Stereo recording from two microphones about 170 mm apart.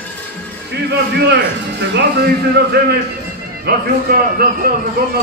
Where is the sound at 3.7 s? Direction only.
65° right (ahead or behind).